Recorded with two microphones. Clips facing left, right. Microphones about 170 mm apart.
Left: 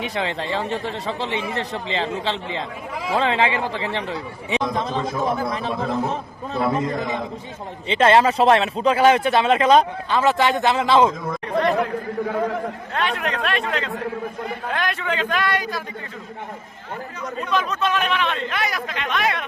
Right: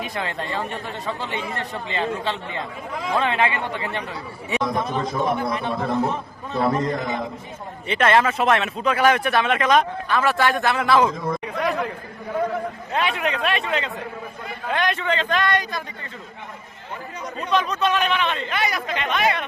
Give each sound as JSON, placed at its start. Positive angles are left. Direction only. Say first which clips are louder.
{"t": 0.7, "sound": "speech", "louder": "left 3 dB", "side_deg": 85}
{"t": 1.4, "sound": "speech", "louder": "left 3 dB", "side_deg": 25}
{"t": 4.9, "sound": "speech", "louder": "even", "side_deg": 0}
{"t": 6.6, "sound": "speech", "louder": "even", "side_deg": 0}
{"t": 7.9, "sound": "speech", "louder": "left 3 dB", "side_deg": 30}
{"t": 11.2, "sound": "speech", "louder": "left 3 dB", "side_deg": -5}
{"t": 12.9, "sound": "a man's voice", "louder": "right 2 dB", "side_deg": -5}
{"t": 17.5, "sound": "speech", "louder": "right 1 dB", "side_deg": 0}